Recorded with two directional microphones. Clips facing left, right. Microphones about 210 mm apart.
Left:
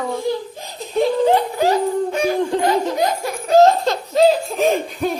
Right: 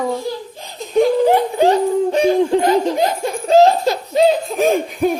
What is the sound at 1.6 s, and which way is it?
Speech, 30° right (ahead or behind).